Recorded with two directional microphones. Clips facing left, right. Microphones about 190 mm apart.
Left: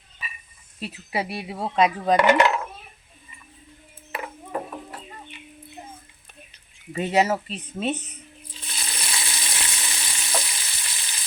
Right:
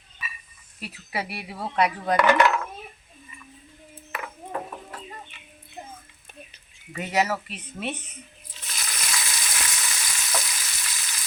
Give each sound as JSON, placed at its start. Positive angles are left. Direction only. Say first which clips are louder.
{"t": 0.8, "sound": "speech", "louder": "left 4 dB", "side_deg": 25}
{"t": 6.9, "sound": "speech", "louder": "left 4 dB", "side_deg": 25}
{"t": 8.6, "sound": "frying", "louder": "even", "side_deg": 30}